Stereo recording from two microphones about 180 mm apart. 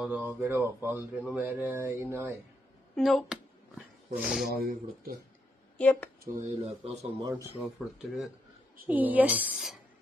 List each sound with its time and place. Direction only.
0.0 s speech: 10° right (ahead or behind)
3.0 s speech: centre (ahead or behind)
5.8 s speech: 5° left (ahead or behind)
6.2 s speech: 45° right (ahead or behind)
7.6 s speech: centre (ahead or behind)